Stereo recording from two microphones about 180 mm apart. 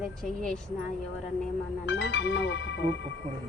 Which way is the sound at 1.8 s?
70° left (ahead or behind).